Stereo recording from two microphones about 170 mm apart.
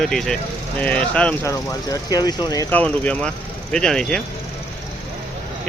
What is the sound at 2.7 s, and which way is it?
Speech, 10° left (ahead or behind).